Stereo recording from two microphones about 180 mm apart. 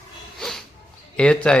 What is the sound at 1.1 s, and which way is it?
Speech, 5° left (ahead or behind).